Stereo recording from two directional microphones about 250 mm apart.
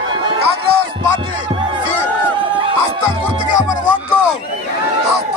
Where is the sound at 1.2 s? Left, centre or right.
Centre.